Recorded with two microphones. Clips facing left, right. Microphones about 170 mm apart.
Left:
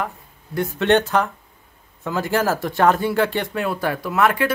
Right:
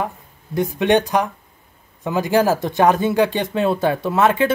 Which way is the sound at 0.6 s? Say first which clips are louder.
Right 1 dB; 15° right (ahead or behind).